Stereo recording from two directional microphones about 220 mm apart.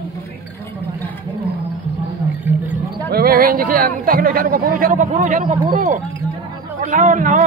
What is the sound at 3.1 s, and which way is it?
Speech, 45° right (ahead or behind).